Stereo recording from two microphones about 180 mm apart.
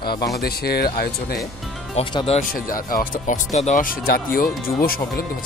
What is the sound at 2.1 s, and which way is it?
Speech, 30° left (ahead or behind).